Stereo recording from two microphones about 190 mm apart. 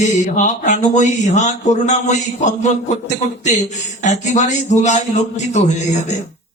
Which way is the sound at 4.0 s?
40° left (ahead or behind).